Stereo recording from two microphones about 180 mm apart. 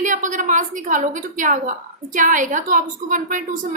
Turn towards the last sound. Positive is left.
turn(degrees=-45)  # may be behind; listen again after turning